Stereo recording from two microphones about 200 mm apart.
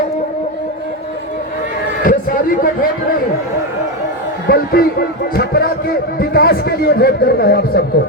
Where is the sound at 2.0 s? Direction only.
45° left (ahead or behind).